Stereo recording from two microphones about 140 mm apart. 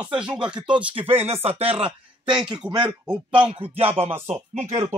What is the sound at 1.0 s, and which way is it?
Music, 45° right (ahead or behind).